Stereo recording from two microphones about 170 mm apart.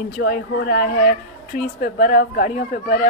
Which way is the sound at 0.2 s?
60° left (ahead or behind).